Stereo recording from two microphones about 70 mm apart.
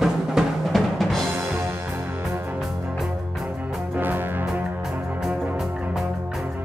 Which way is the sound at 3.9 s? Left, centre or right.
Right.